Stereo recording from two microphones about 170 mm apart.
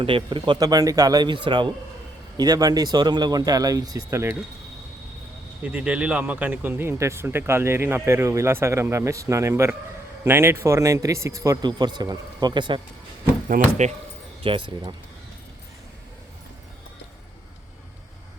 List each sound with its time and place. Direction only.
0.0 s speech: 30° right (ahead or behind)
5.6 s speech: 5° right (ahead or behind); by 12.8 s 25° right (ahead or behind)
13.5 s speech: 45° right (ahead or behind)
14.4 s speech: 30° right (ahead or behind)